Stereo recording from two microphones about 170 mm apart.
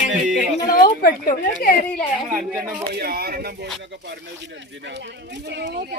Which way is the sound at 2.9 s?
65° right (ahead or behind).